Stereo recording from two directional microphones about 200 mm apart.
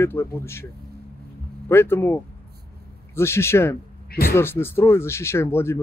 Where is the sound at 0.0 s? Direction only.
10° left (ahead or behind).